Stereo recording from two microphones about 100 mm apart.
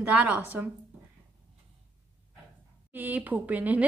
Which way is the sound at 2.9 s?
15° right (ahead or behind).